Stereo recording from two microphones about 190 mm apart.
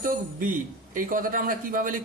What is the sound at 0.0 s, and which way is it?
A man's voice, 45° right (ahead or behind).